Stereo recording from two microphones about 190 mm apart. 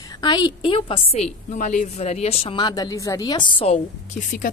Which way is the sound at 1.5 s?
40° left (ahead or behind).